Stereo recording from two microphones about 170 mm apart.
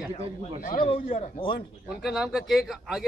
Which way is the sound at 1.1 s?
35° left (ahead or behind).